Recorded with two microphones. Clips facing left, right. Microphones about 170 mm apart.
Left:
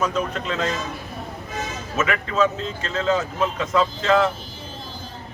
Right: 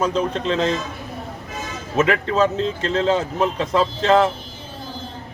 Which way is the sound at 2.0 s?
30° right (ahead or behind).